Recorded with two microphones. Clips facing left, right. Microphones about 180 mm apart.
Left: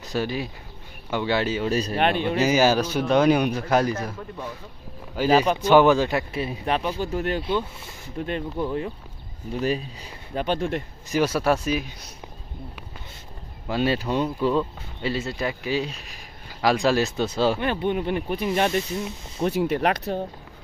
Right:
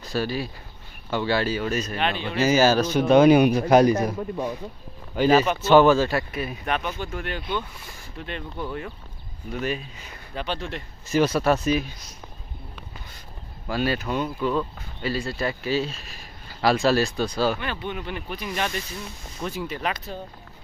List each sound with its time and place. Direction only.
0.0 s speech: 20° left (ahead or behind)
2.0 s speech: 55° left (ahead or behind)
2.2 s speech: 15° left (ahead or behind)
3.1 s a man's voice: 5° right (ahead or behind)
5.1 s speech: 10° left (ahead or behind); by 8.5 s 40° left (ahead or behind)
8.5 s speech: 25° left (ahead or behind)
9.5 s speech: 35° left (ahead or behind)
10.4 s speech: 50° left (ahead or behind)
11.1 s speech: 10° left (ahead or behind)
13.7 s speech: 25° left (ahead or behind)
17.6 s speech: 45° left (ahead or behind)
18.3 s speech: 30° left (ahead or behind)
19.4 s speech: 65° left (ahead or behind)